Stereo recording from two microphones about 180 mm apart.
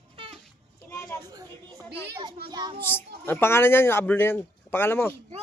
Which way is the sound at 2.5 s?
25° right (ahead or behind).